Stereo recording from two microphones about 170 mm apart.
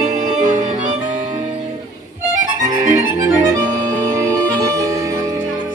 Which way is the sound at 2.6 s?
20° right (ahead or behind).